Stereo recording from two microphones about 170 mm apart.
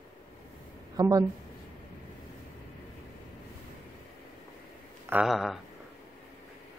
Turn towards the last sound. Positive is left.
turn(degrees=0)  # may be behind; listen again after turning